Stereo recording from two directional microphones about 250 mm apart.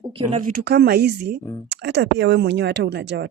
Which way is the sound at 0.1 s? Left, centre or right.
Right.